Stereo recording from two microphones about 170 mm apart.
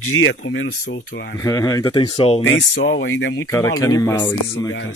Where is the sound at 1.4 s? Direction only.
20° left (ahead or behind).